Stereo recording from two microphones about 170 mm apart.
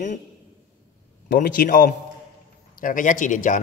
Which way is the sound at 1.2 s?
55° left (ahead or behind).